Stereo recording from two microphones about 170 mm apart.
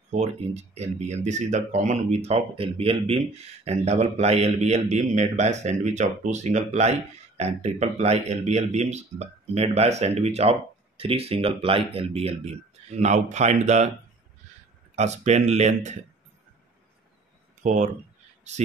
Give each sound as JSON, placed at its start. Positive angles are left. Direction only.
{"t": 0.1, "sound": "speech", "side_deg": -40}
{"t": 15.0, "sound": "speech", "side_deg": -40}
{"t": 17.6, "sound": "speech", "side_deg": -45}